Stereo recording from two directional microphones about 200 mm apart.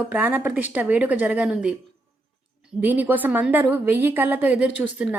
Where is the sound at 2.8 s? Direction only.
10° right (ahead or behind).